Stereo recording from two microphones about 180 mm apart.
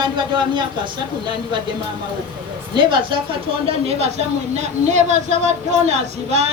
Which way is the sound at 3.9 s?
35° right (ahead or behind).